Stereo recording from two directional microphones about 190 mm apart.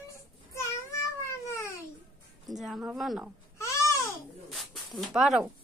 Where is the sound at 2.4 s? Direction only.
Centre (ahead or behind).